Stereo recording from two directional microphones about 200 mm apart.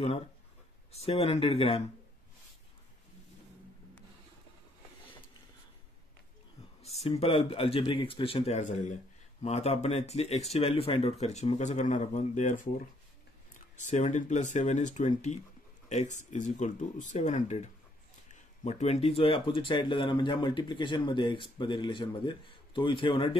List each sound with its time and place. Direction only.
0.9 s speech: 30° left (ahead or behind)
6.8 s speech: 30° left (ahead or behind)